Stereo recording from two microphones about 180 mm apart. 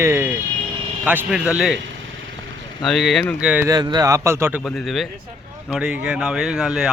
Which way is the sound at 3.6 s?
20° right (ahead or behind).